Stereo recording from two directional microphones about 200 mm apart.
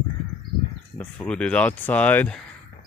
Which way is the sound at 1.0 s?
5° left (ahead or behind).